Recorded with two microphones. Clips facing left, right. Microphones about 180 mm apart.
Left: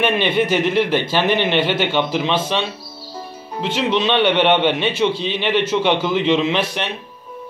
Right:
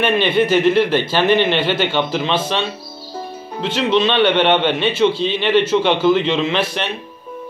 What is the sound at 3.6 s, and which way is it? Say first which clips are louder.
A man's voice: right 2 dB; 15° left (ahead or behind).